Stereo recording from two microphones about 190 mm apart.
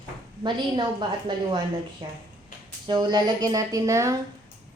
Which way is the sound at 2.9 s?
25° right (ahead or behind).